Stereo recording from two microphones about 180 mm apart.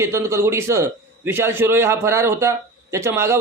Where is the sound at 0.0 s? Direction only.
15° right (ahead or behind).